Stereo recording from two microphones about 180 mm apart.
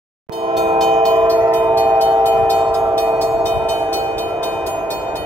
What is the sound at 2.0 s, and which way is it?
Train, 20° right (ahead or behind).